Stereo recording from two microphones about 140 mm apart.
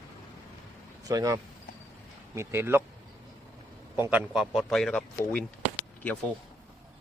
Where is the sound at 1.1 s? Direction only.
25° right (ahead or behind).